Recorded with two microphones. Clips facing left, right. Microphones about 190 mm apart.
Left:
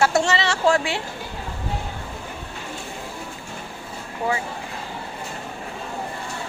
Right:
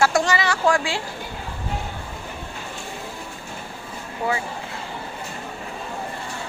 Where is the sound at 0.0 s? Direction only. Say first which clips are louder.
Even; 25° left (ahead or behind).